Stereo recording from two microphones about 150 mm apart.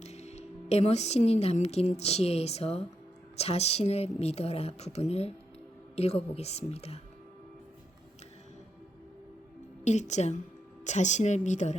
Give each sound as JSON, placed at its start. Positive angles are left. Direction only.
{"t": 0.0, "sound": "a woman's voice", "side_deg": 45}
{"t": 9.8, "sound": "a woman's voice", "side_deg": 50}